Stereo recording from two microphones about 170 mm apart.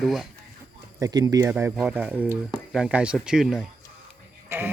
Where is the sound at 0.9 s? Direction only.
20° right (ahead or behind); by 3.6 s 5° right (ahead or behind).